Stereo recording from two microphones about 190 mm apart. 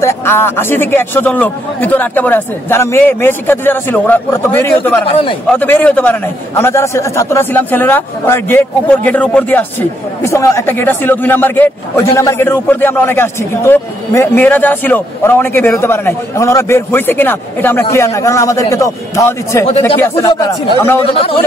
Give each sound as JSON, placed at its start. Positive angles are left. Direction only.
{"t": 0.0, "sound": "a man's voice", "side_deg": 15}
{"t": 5.0, "sound": "a man's voice", "side_deg": 30}
{"t": 5.5, "sound": "a man's voice", "side_deg": 10}
{"t": 21.0, "sound": "a man's voice", "side_deg": 30}